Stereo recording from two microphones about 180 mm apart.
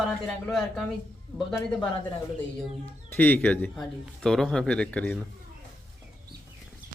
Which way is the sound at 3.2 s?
10° left (ahead or behind).